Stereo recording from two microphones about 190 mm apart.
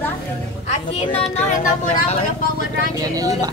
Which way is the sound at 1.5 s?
45° left (ahead or behind).